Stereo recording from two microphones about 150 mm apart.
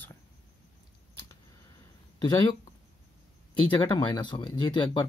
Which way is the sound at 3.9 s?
30° left (ahead or behind).